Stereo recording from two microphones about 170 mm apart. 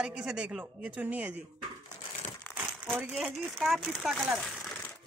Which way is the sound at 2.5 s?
10° right (ahead or behind).